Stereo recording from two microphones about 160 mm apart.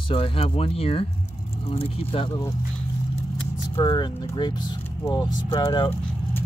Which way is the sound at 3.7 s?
30° left (ahead or behind).